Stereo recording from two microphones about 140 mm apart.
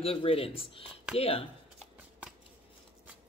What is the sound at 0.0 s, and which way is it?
Speech, 45° left (ahead or behind).